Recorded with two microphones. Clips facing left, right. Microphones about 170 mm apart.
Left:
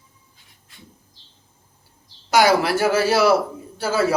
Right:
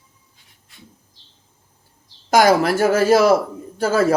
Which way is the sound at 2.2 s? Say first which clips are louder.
Right 2 dB; 50° right (ahead or behind).